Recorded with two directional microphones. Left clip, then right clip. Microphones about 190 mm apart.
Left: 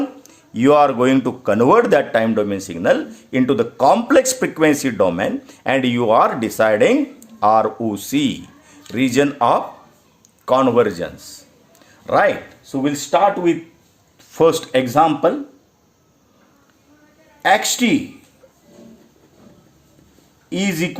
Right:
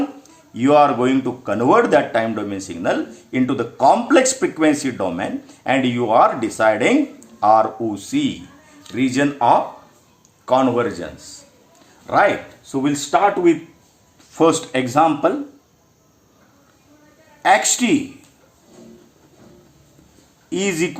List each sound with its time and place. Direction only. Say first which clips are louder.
0.2 s speech: left 3 dB; 55° left (ahead or behind)
12.7 s a man's voice: left 1 dB; 35° left (ahead or behind)
17.4 s a man's voice: even; 35° left (ahead or behind)
20.5 s a man's voice: right 1 dB; 30° left (ahead or behind)